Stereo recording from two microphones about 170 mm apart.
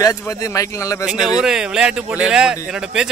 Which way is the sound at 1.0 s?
5° right (ahead or behind).